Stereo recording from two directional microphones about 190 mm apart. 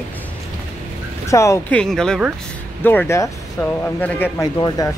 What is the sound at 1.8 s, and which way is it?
Speech, 5° left (ahead or behind).